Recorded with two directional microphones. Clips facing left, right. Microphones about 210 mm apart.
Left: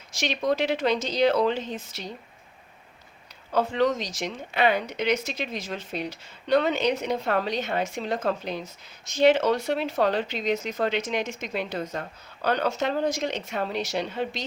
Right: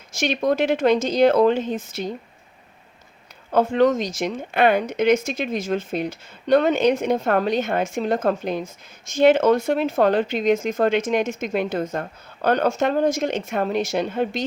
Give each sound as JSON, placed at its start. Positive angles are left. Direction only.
{"t": 0.1, "sound": "speech", "side_deg": -50}
{"t": 3.5, "sound": "speech", "side_deg": -50}